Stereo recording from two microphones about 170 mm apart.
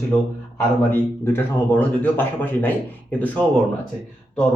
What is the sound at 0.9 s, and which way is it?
Speech, 10° left (ahead or behind).